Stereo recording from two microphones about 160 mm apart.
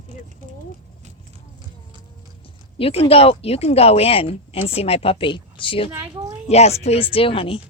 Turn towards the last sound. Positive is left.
turn(degrees=35)  # may be behind; listen again after turning